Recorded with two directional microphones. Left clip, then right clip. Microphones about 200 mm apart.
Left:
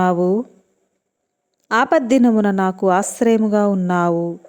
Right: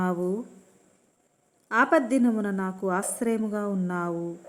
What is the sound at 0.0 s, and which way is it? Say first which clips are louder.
Speech: left 12 dB; 40° left (ahead or behind).